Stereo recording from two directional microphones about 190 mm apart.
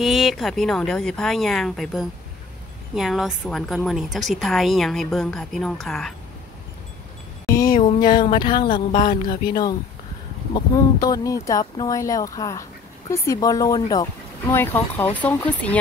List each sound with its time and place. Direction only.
0.0 s a woman's voice: centre (ahead or behind)
7.4 s a sound: 20° left (ahead or behind)
13.1 s speech: 15° left (ahead or behind)